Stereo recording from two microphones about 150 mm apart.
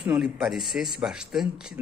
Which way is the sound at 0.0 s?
5° right (ahead or behind).